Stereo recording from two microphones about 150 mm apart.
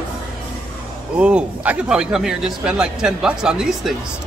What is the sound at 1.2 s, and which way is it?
Speech, 5° right (ahead or behind).